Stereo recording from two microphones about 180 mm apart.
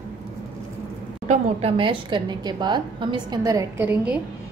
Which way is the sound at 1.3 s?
35° right (ahead or behind).